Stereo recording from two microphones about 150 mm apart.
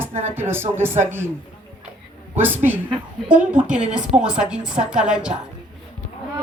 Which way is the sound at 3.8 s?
55° right (ahead or behind).